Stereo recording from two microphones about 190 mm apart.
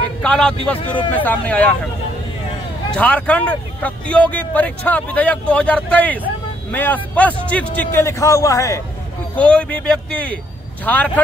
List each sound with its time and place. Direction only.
0.2 s speech: 5° left (ahead or behind)
3.0 s speech: 5° left (ahead or behind)
9.3 s speech: 5° left (ahead or behind)